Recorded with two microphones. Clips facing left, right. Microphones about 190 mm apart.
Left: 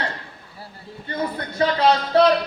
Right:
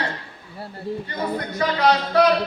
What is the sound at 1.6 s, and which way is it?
Speech, 30° left (ahead or behind).